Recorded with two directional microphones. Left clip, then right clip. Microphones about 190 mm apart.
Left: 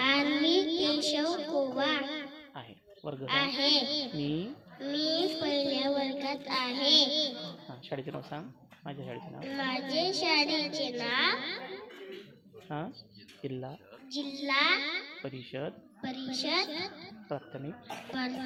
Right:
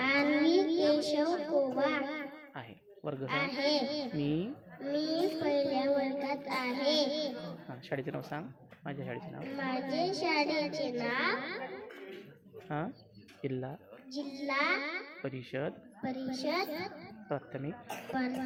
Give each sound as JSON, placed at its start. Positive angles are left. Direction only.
{"t": 0.0, "sound": "a sound", "side_deg": -45}
{"t": 2.6, "sound": "a sound", "side_deg": -5}
{"t": 3.4, "sound": "a child's voice", "side_deg": -40}
{"t": 7.7, "sound": "speech", "side_deg": -5}
{"t": 9.6, "sound": "speech", "side_deg": -45}
{"t": 12.6, "sound": "speech", "side_deg": -5}
{"t": 14.1, "sound": "speech", "side_deg": -40}
{"t": 15.4, "sound": "speech", "side_deg": -5}
{"t": 16.0, "sound": "speech", "side_deg": -40}
{"t": 17.2, "sound": "speech", "side_deg": -10}
{"t": 17.8, "sound": "speech", "side_deg": -45}